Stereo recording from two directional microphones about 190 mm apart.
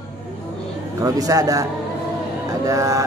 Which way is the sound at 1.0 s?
20° right (ahead or behind).